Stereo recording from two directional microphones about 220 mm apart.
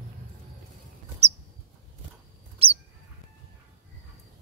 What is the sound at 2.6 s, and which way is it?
Bird, 25° right (ahead or behind).